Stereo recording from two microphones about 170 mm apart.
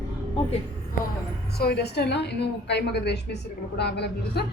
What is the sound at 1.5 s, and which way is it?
A woman's voice, 70° left (ahead or behind).